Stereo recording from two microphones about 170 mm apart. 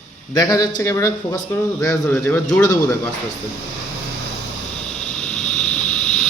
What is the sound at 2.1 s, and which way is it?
Speech, 10° left (ahead or behind).